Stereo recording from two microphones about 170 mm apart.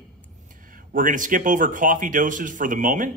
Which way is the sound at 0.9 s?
50° right (ahead or behind).